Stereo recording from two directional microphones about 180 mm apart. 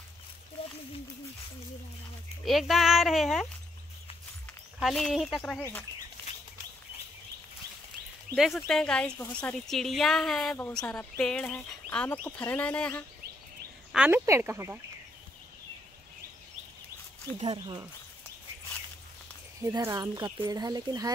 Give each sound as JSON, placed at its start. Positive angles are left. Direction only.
{"t": 2.4, "sound": "speech", "side_deg": 0}
{"t": 4.7, "sound": "speech", "side_deg": 0}
{"t": 8.4, "sound": "speech", "side_deg": 0}
{"t": 13.9, "sound": "speech", "side_deg": -10}
{"t": 17.4, "sound": "speech", "side_deg": -30}
{"t": 19.6, "sound": "speech", "side_deg": -20}